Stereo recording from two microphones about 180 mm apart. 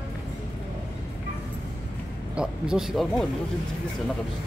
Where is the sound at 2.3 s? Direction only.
5° right (ahead or behind).